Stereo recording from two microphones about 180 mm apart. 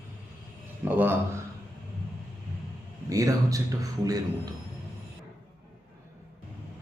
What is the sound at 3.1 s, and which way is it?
Speech, 20° right (ahead or behind).